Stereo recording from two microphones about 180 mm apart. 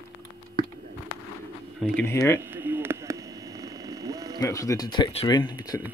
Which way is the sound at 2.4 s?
10° right (ahead or behind).